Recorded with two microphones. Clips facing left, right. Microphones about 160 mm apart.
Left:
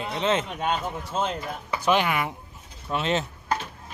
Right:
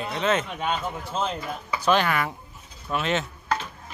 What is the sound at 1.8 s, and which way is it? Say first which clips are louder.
Speech: right 1 dB; 15° left (ahead or behind).